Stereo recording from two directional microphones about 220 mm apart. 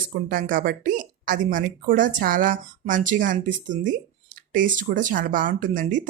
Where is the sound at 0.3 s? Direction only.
40° right (ahead or behind).